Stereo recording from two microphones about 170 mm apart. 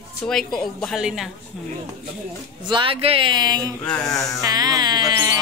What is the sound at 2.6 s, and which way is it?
Speech, 30° right (ahead or behind).